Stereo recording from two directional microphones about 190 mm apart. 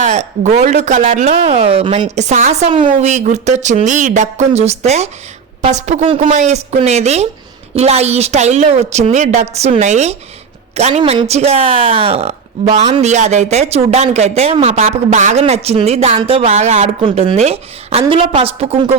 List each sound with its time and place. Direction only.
0.0 s speech: 35° right (ahead or behind)